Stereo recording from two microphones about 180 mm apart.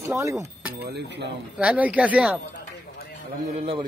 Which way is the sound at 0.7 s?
65° right (ahead or behind).